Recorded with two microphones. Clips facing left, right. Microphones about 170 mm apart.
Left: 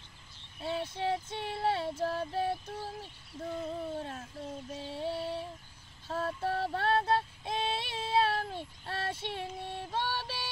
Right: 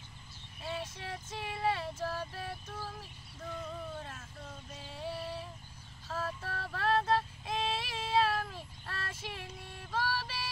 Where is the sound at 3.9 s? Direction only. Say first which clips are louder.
Left 6 dB; 35° left (ahead or behind).